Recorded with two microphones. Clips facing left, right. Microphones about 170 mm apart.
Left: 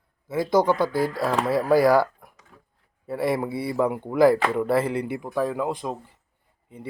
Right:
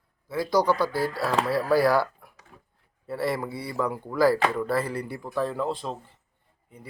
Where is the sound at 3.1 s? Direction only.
20° left (ahead or behind).